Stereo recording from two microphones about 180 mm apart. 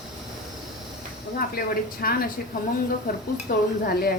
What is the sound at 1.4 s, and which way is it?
Speech, 55° left (ahead or behind).